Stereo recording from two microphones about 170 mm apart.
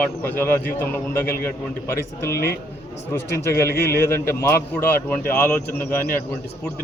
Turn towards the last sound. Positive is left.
turn(degrees=10)  # may be behind; listen again after turning